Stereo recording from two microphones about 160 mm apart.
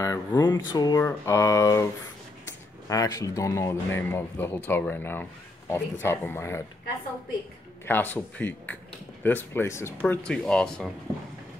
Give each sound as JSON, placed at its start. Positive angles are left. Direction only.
{"t": 0.0, "sound": "speech", "side_deg": 25}
{"t": 7.8, "sound": "speech", "side_deg": 10}
{"t": 10.0, "sound": "speech", "side_deg": 5}